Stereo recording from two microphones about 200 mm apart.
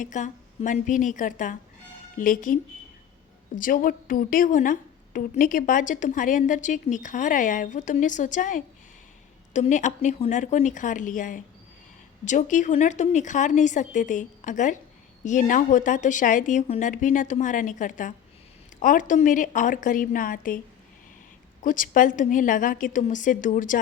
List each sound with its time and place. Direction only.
0.0 s a woman's voice: 40° left (ahead or behind)
21.6 s a woman's voice: 40° left (ahead or behind)